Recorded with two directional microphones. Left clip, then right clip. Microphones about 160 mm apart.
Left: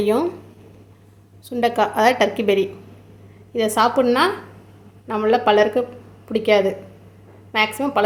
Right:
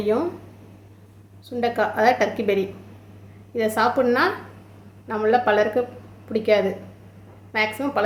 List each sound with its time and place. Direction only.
0.0 s a woman's voice: 30° left (ahead or behind)
1.5 s a woman's voice: 35° left (ahead or behind)